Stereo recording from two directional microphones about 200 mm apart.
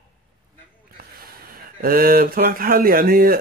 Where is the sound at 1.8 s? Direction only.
45° right (ahead or behind).